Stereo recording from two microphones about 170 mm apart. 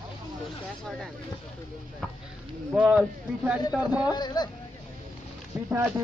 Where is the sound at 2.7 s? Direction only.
5° right (ahead or behind).